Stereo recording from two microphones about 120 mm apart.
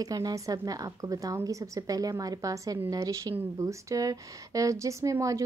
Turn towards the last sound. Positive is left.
turn(degrees=-25)  # may be behind; listen again after turning